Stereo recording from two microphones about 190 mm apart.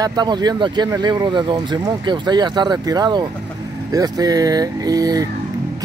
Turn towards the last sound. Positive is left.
turn(degrees=-20)  # may be behind; listen again after turning